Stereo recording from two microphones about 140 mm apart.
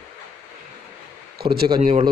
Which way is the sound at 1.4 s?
90° right.